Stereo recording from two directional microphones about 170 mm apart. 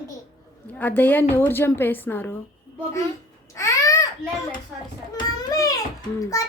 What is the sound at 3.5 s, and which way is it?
Babbling, 20° left (ahead or behind).